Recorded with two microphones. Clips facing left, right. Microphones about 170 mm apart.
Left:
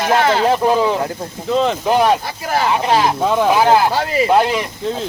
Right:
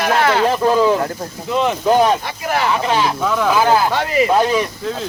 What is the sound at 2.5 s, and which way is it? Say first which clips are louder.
Speech: left 2 dB; 30° left (ahead or behind).